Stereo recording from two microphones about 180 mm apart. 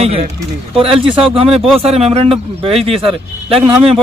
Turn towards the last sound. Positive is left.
turn(degrees=-30)  # may be behind; listen again after turning